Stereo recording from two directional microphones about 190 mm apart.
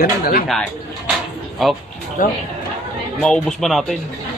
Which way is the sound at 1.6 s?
Centre (ahead or behind).